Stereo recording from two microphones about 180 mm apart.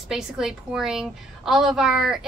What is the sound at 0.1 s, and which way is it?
A woman's voice, 5° right (ahead or behind).